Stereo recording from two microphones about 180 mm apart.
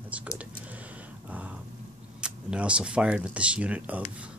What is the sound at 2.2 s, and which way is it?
Speech, 5° right (ahead or behind).